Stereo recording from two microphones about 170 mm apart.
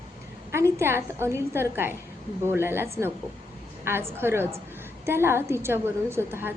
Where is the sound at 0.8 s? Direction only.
15° right (ahead or behind).